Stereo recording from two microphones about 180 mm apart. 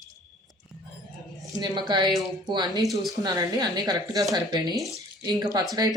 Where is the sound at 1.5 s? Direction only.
25° right (ahead or behind).